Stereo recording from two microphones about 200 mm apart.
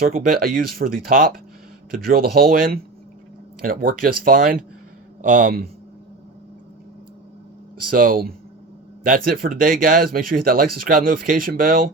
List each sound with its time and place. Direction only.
0.3 s speech: 45° right (ahead or behind)
7.9 s speech: 45° right (ahead or behind)